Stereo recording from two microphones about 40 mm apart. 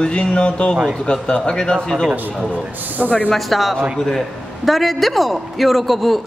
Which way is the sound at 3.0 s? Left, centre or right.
Left.